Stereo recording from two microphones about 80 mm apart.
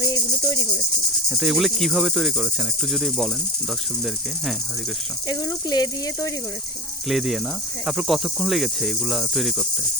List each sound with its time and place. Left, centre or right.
0.0 s cricket: left
1.3 s cricket: centre
5.3 s speech: left
7.1 s cricket: centre